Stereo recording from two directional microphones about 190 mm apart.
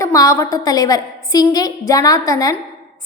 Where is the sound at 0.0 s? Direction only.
15° left (ahead or behind).